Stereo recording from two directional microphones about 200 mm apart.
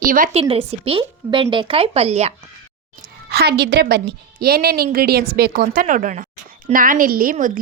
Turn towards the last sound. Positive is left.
turn(degrees=-40)  # may be behind; listen again after turning